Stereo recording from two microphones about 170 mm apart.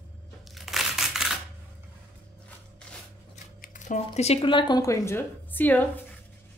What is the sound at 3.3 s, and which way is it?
Speech, 50° left (ahead or behind).